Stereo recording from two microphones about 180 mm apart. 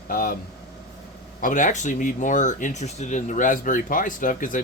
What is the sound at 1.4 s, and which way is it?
Speech, 45° left (ahead or behind).